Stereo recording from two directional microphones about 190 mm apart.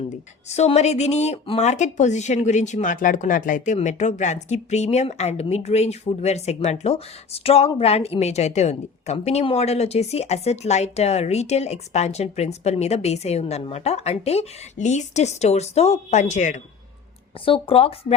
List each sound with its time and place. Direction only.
0.4 s speech: 35° left (ahead or behind)
17.4 s speech: 30° left (ahead or behind)